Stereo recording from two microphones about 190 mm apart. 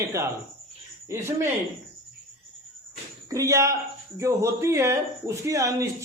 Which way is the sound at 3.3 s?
15° right (ahead or behind).